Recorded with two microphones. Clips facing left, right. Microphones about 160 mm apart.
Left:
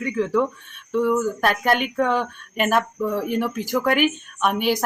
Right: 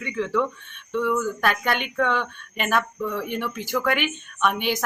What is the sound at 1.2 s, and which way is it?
Speech, 40° left (ahead or behind).